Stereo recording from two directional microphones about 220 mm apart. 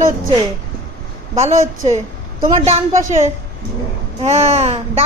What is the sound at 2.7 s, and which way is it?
A child's voice, 30° right (ahead or behind).